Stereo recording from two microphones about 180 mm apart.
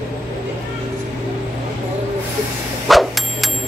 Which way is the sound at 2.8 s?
Centre (ahead or behind).